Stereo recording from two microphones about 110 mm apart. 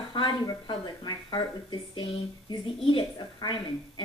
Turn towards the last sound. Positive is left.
turn(degrees=45)  # may be behind; listen again after turning